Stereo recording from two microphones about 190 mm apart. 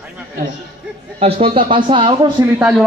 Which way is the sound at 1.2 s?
30° right (ahead or behind).